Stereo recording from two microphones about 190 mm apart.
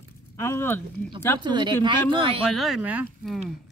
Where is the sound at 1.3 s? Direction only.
25° right (ahead or behind).